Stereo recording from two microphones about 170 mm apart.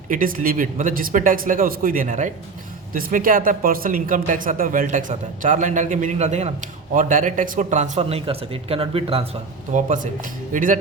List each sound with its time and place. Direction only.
0.1 s a man's voice: 55° right (ahead or behind)